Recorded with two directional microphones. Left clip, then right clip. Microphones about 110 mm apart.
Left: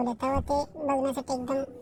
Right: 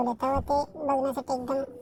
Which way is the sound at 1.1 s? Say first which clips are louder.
Right 1 dB; 5° left (ahead or behind).